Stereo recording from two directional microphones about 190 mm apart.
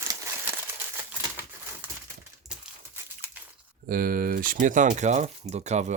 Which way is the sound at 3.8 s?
50° right (ahead or behind).